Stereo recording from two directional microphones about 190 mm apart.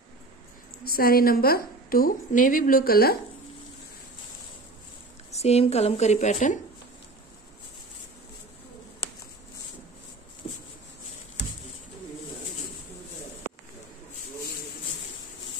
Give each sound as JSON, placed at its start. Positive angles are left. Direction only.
{"t": 0.8, "sound": "a woman's voice", "side_deg": 50}
{"t": 5.3, "sound": "a woman's voice", "side_deg": 35}